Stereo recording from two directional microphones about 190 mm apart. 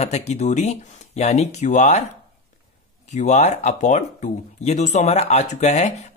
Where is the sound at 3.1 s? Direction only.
40° left (ahead or behind).